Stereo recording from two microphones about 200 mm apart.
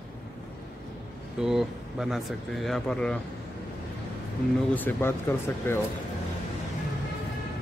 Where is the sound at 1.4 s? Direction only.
Centre (ahead or behind).